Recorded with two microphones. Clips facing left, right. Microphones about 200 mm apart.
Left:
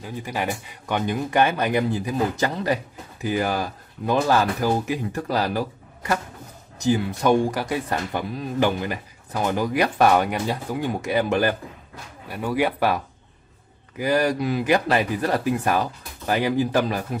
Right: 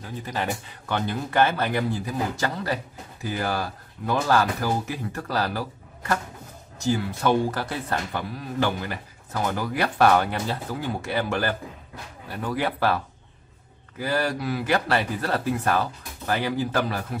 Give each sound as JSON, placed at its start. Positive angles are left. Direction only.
{"t": 0.0, "sound": "speech", "side_deg": 10}